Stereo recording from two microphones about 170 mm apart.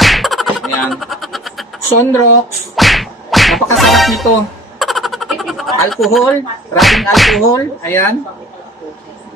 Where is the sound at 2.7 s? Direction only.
Centre (ahead or behind).